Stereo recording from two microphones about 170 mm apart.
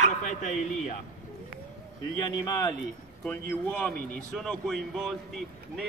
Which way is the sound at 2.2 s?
20° left (ahead or behind).